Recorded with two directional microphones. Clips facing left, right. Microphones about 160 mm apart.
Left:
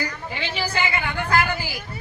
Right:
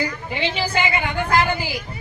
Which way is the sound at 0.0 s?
20° right (ahead or behind).